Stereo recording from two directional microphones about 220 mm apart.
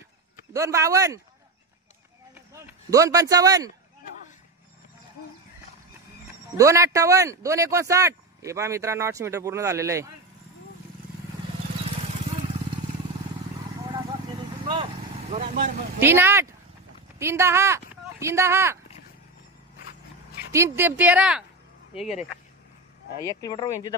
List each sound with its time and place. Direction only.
0.5 s a man's voice: 15° right (ahead or behind)
2.5 s speech: 15° right (ahead or behind)
6.5 s a man's voice: 15° right (ahead or behind)
14.7 s vehicle: 25° right (ahead or behind)
16.0 s a man's voice: 10° right (ahead or behind)
20.5 s a man's voice: 10° right (ahead or behind)
23.4 s speech: 20° left (ahead or behind)